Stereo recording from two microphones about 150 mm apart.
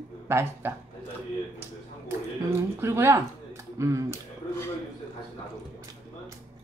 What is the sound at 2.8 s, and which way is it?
Speech, 15° right (ahead or behind).